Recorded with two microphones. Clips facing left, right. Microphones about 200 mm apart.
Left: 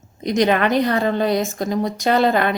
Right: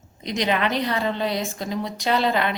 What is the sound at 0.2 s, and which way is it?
A woman's voice, 50° left (ahead or behind).